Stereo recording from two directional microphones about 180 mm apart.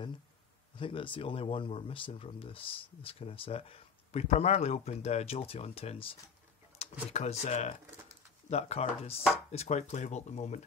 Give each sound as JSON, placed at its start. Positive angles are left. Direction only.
{"t": 0.7, "sound": "speech", "side_deg": 30}